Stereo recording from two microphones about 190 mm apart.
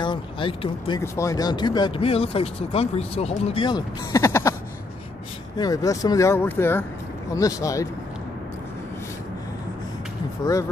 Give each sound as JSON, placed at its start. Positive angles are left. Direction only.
{"t": 0.0, "sound": "speech", "side_deg": 25}
{"t": 5.6, "sound": "speech", "side_deg": 20}